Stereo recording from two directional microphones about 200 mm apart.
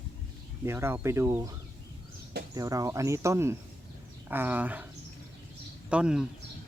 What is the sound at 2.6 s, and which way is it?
Speech, 15° right (ahead or behind).